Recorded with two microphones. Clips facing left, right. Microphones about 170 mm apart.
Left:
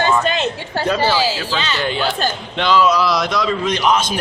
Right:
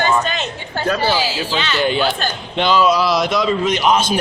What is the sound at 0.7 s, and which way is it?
Speech, 30° left (ahead or behind).